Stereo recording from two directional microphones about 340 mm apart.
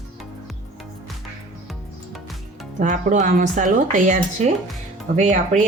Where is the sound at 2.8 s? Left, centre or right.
Right.